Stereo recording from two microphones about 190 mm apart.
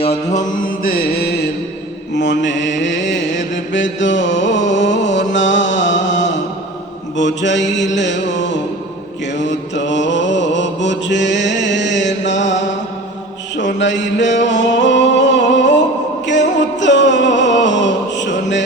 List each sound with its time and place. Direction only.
0.0 s mantra: 40° left (ahead or behind); by 1.3 s 55° left (ahead or behind)
2.1 s mantra: 70° left (ahead or behind)
9.4 s mantra: 70° left (ahead or behind)
13.7 s mantra: 70° left (ahead or behind)
14.4 s music: 70° left (ahead or behind)